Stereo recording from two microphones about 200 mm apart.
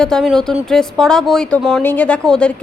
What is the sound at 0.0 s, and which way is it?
Speech, centre (ahead or behind).